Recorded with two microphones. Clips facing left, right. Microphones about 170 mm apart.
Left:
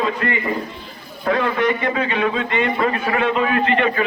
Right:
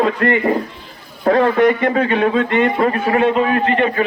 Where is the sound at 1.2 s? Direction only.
40° right (ahead or behind).